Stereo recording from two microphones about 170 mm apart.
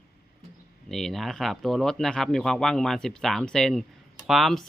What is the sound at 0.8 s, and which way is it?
Speech, centre (ahead or behind).